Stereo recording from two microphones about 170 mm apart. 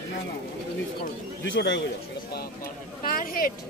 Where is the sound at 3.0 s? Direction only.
55° left (ahead or behind).